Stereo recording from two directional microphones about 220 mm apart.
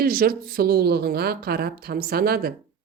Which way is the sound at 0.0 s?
40° right (ahead or behind).